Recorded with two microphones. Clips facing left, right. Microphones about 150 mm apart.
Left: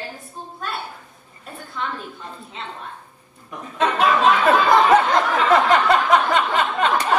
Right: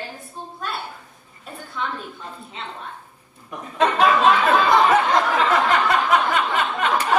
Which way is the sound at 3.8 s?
Centre (ahead or behind).